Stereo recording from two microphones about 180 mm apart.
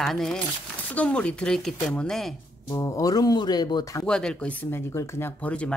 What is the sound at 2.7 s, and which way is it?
Speech, 15° left (ahead or behind).